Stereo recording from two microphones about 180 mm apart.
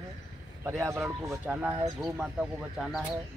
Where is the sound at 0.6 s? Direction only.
15° right (ahead or behind).